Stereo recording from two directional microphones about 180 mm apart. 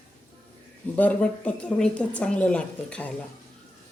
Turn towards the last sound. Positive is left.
turn(degrees=5)  # may be behind; listen again after turning